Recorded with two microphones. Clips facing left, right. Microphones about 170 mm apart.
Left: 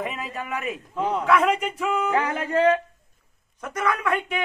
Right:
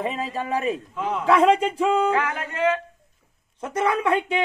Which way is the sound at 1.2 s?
30° right (ahead or behind).